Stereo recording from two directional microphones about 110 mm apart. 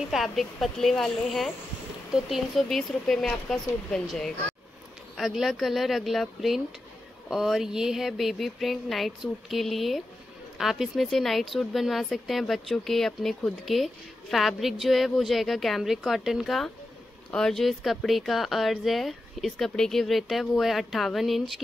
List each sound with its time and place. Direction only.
0.1 s speech: centre (ahead or behind)